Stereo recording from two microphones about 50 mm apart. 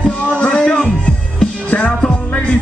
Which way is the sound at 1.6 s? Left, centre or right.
Left.